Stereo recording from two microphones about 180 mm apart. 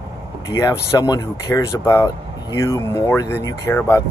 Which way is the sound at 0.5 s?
20° left (ahead or behind).